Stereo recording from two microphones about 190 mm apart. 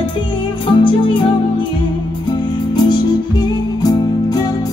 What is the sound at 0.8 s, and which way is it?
Music, 25° left (ahead or behind).